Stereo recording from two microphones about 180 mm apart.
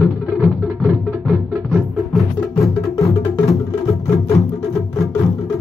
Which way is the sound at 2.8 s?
15° left (ahead or behind).